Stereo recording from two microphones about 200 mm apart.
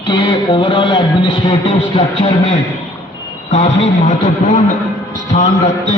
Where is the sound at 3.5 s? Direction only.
35° left (ahead or behind).